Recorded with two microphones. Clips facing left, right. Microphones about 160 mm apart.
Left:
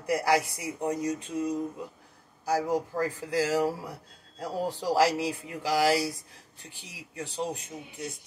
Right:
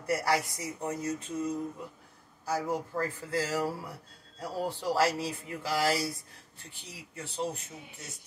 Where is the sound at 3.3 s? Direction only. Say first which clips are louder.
Left 5 dB; 15° left (ahead or behind).